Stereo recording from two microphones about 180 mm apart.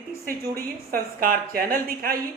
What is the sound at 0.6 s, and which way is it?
A woman's voice, 55° right (ahead or behind).